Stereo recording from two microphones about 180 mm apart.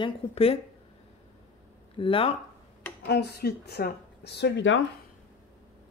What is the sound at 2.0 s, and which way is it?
Speech, 30° left (ahead or behind).